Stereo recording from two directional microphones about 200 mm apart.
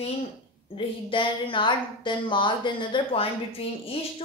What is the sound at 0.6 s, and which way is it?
A woman's voice, 25° left (ahead or behind).